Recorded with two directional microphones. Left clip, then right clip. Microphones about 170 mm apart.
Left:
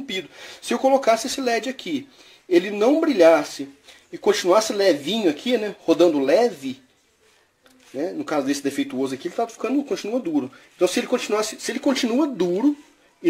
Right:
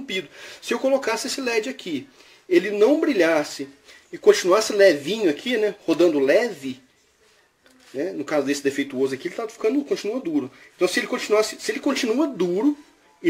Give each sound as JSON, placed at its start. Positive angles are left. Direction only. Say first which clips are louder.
{"t": 0.0, "sound": "speech", "louder": "right 1 dB", "side_deg": 35}
{"t": 8.0, "sound": "speech", "louder": "even", "side_deg": 35}